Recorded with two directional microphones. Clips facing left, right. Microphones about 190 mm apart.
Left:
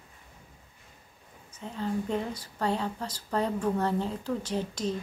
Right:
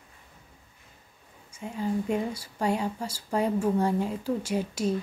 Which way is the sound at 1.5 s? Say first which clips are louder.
Right 3 dB; 10° right (ahead or behind).